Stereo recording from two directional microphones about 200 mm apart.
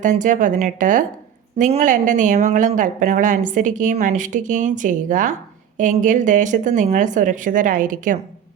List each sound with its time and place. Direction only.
0.0 s speech: 40° right (ahead or behind)